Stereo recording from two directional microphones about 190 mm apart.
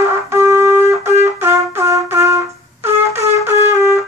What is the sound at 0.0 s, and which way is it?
Wind instrument, 15° right (ahead or behind).